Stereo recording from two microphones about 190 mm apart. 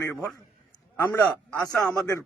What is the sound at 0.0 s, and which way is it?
A man's voice, 15° left (ahead or behind).